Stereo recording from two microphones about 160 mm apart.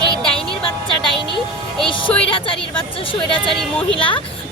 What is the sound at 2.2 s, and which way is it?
Speech, 35° left (ahead or behind).